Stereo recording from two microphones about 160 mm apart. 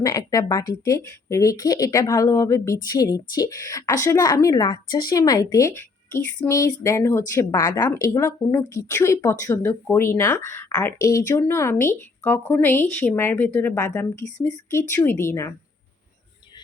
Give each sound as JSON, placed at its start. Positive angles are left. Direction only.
{"t": 0.0, "sound": "speech", "side_deg": 20}